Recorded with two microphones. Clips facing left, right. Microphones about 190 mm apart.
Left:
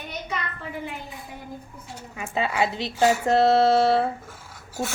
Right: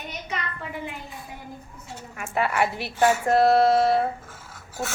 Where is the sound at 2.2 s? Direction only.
20° left (ahead or behind).